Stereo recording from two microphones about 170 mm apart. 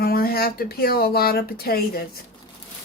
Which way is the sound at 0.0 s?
65° left (ahead or behind).